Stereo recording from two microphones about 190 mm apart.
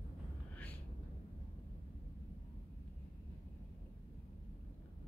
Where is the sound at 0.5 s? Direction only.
10° left (ahead or behind).